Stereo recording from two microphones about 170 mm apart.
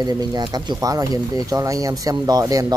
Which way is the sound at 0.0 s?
25° right (ahead or behind).